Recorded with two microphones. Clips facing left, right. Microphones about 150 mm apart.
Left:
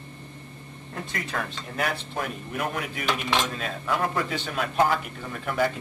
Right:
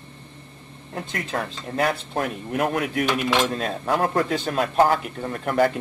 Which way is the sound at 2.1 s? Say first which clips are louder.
Right 6 dB; 55° right (ahead or behind).